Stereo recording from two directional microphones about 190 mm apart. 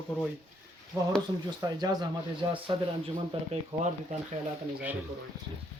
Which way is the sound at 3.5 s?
35° right (ahead or behind).